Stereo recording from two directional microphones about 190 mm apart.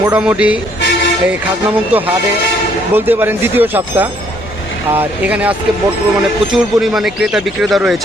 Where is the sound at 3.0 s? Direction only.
10° right (ahead or behind).